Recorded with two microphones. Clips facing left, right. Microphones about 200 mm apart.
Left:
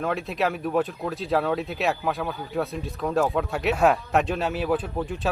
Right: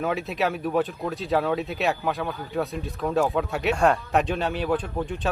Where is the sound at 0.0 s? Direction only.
Centre (ahead or behind).